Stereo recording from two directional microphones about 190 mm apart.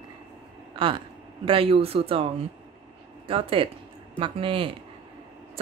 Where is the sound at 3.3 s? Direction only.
30° right (ahead or behind).